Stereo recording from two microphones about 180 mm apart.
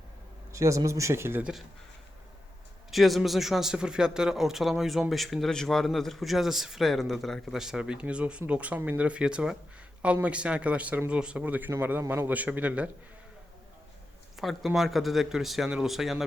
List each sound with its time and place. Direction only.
0.5 s speech: 15° right (ahead or behind)
2.9 s a man's voice: centre (ahead or behind)
14.3 s a man's voice: centre (ahead or behind)